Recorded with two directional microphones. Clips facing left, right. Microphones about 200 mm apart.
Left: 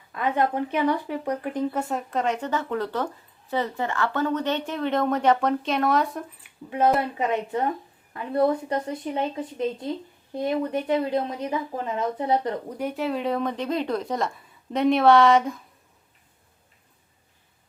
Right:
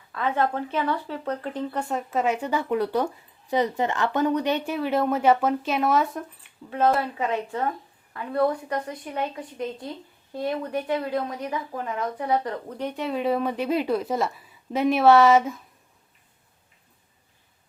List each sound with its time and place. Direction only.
0.1 s speech: 15° left (ahead or behind)
1.9 s speech: centre (ahead or behind)
6.7 s speech: 15° left (ahead or behind)
13.0 s a woman's voice: centre (ahead or behind)